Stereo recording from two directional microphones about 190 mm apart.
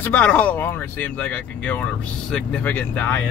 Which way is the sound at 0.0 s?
10° left (ahead or behind).